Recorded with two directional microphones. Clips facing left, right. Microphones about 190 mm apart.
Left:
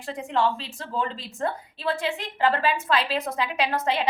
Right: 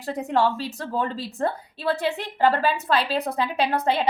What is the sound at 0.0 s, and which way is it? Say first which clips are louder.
Speech: right 3 dB; 40° right (ahead or behind).